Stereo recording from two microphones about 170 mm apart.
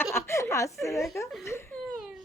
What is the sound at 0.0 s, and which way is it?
Chuckle, 15° left (ahead or behind).